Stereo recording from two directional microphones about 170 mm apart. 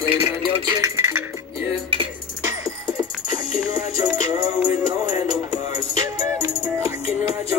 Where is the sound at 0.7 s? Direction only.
20° right (ahead or behind).